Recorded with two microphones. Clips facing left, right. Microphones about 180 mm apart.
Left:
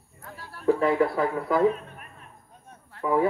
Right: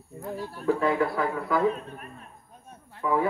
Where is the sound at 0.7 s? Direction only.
25° left (ahead or behind).